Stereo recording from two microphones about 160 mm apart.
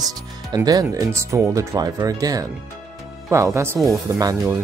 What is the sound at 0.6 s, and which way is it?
Speech, 20° right (ahead or behind).